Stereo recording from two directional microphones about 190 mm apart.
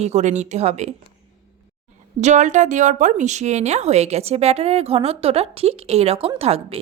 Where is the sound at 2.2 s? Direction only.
40° right (ahead or behind).